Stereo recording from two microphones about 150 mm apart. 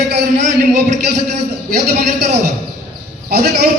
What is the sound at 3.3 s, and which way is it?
Speech, 90° right.